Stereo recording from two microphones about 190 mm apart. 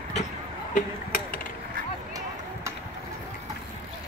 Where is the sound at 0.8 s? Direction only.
45° left (ahead or behind).